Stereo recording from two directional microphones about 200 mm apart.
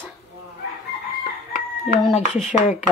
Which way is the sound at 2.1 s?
35° left (ahead or behind).